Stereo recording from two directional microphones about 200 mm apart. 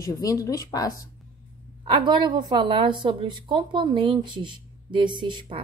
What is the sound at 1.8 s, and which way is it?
A woman's voice, 25° right (ahead or behind).